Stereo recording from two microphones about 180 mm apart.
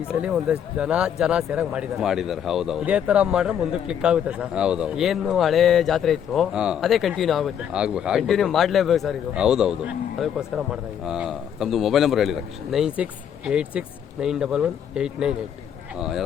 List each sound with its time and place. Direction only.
0.1 s speech: 5° right (ahead or behind)